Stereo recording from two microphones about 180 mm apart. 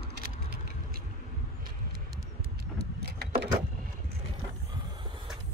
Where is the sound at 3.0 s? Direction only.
65° right (ahead or behind).